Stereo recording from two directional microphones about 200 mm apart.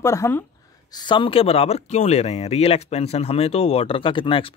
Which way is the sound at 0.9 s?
25° left (ahead or behind).